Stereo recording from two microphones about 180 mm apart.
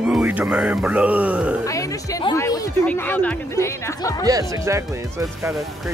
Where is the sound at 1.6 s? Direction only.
20° left (ahead or behind).